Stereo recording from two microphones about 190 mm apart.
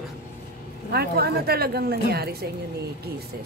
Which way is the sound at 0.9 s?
55° right (ahead or behind).